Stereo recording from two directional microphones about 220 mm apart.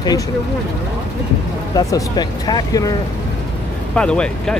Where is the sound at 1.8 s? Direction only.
15° left (ahead or behind).